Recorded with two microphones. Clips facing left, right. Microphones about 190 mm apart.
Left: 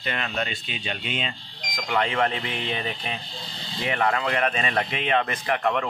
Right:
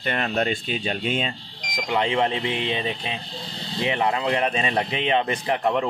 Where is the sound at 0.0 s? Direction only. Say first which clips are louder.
Right 5 dB; 45° right (ahead or behind).